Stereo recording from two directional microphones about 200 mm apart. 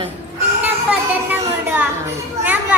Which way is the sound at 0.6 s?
10° right (ahead or behind).